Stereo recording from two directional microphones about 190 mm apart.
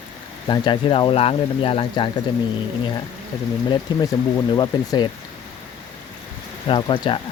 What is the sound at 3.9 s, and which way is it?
Speech, 20° left (ahead or behind).